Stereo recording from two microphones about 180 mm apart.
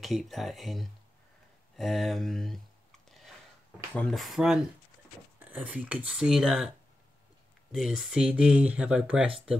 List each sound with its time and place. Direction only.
0.0 s speech: centre (ahead or behind)
3.9 s speech: 5° left (ahead or behind)
7.7 s speech: centre (ahead or behind)